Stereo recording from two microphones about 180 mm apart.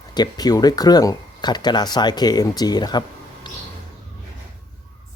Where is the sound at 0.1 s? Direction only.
20° left (ahead or behind).